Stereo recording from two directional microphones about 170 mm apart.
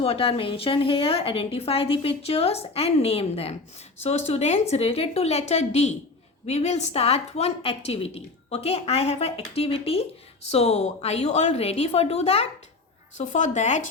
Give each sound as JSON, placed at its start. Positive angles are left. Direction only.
{"t": 0.0, "sound": "a woman's voice", "side_deg": 35}